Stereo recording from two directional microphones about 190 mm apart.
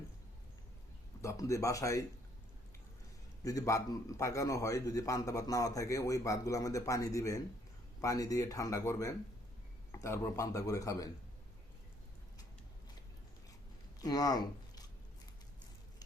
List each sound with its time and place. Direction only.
1.2 s a man's voice: 15° left (ahead or behind)
3.4 s a man's voice: 15° left (ahead or behind)
14.0 s speech: 20° left (ahead or behind)